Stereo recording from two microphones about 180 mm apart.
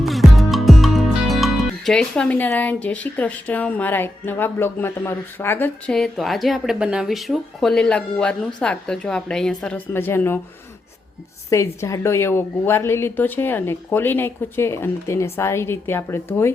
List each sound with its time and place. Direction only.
0.0 s speech: centre (ahead or behind)
11.4 s a woman's voice: 15° left (ahead or behind)